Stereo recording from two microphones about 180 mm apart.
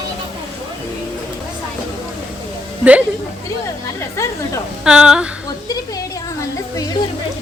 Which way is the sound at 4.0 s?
15° left (ahead or behind).